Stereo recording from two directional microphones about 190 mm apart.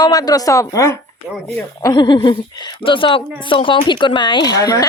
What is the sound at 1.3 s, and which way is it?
Speech, 5° left (ahead or behind).